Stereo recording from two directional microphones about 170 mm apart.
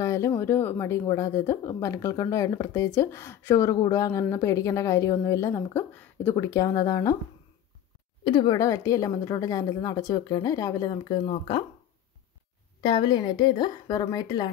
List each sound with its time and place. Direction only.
0.0 s speech: 15° left (ahead or behind)
8.2 s a woman's voice: 30° left (ahead or behind)
12.8 s a woman's voice: 25° left (ahead or behind)